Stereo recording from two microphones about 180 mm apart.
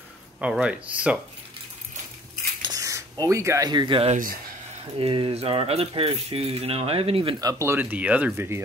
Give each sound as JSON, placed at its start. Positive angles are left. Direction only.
{"t": 0.4, "sound": "speech", "side_deg": -5}
{"t": 2.6, "sound": "a sound", "side_deg": -20}
{"t": 3.3, "sound": "speech", "side_deg": -15}
{"t": 7.3, "sound": "speech", "side_deg": -20}